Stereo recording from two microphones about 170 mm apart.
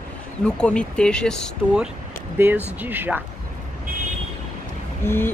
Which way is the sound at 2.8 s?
10° right (ahead or behind).